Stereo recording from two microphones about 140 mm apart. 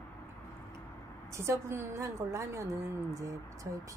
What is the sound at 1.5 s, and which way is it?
A woman's voice, 20° right (ahead or behind).